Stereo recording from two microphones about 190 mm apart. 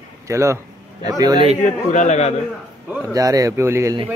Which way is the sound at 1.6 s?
40° left (ahead or behind).